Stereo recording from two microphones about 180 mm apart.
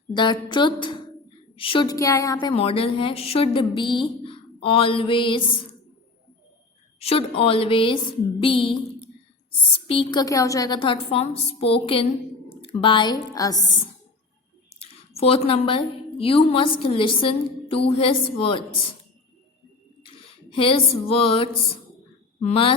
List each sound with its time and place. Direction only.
0.1 s a woman's voice: 25° left (ahead or behind)
7.0 s a woman's voice: 35° left (ahead or behind)
9.8 s a woman's voice: 30° left (ahead or behind)
14.7 s a woman's voice: 35° left (ahead or behind)
20.0 s a sound: 30° left (ahead or behind)
22.4 s speech: 35° left (ahead or behind)